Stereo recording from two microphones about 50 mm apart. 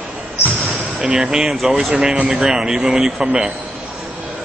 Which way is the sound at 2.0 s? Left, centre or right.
Centre.